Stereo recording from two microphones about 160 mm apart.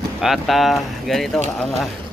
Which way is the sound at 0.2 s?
Centre (ahead or behind).